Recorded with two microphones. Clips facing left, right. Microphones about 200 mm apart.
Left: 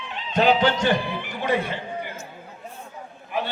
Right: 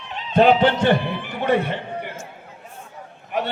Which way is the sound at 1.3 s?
60° right (ahead or behind).